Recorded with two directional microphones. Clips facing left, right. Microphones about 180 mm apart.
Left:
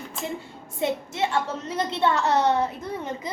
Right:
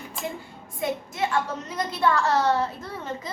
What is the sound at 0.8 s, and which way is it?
A child's voice, 25° left (ahead or behind).